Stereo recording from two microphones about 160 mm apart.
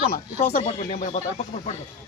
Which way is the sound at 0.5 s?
55° left (ahead or behind).